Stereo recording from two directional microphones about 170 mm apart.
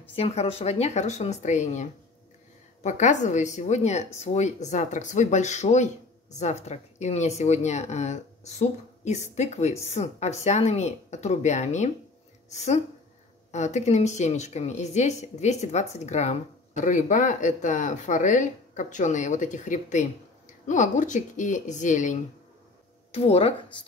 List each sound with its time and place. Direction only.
0.1 s speech: 40° left (ahead or behind)